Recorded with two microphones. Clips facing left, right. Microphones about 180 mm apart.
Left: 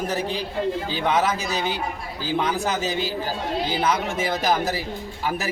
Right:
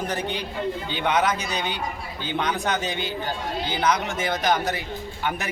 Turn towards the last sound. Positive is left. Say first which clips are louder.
# left 1 dB
turn(degrees=5)  # may be behind; listen again after turning